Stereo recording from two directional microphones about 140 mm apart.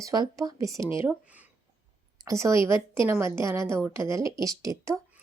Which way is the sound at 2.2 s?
20° right (ahead or behind).